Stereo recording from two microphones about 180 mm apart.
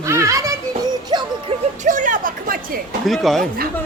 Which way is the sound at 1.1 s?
25° right (ahead or behind).